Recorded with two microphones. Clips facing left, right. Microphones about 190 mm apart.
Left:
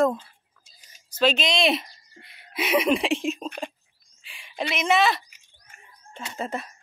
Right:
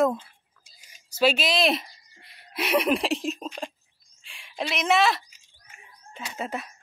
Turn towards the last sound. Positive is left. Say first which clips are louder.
# left 1 dB
turn(degrees=0)  # may be behind; listen again after turning